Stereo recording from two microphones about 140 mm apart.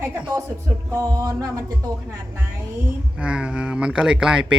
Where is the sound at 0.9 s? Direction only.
25° right (ahead or behind).